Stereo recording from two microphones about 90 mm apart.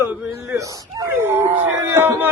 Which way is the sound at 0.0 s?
25° right (ahead or behind).